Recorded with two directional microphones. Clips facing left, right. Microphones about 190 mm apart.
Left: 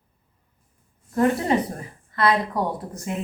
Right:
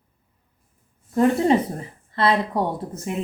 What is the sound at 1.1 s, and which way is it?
A woman's voice, 20° right (ahead or behind).